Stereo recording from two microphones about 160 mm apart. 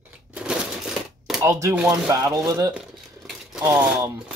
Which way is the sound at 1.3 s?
20° right (ahead or behind).